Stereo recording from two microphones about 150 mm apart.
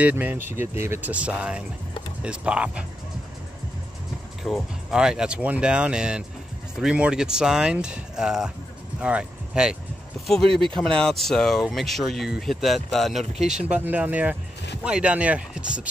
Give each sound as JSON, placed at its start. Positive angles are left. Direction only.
{"t": 0.0, "sound": "speech", "side_deg": -10}
{"t": 4.4, "sound": "speech", "side_deg": 0}
{"t": 10.5, "sound": "speech", "side_deg": -35}
{"t": 10.8, "sound": "speech", "side_deg": 5}